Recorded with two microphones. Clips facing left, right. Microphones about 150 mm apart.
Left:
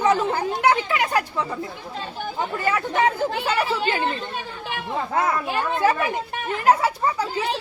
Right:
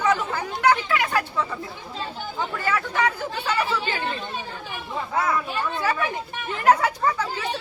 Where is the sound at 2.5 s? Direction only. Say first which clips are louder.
Left 3 dB; 20° left (ahead or behind).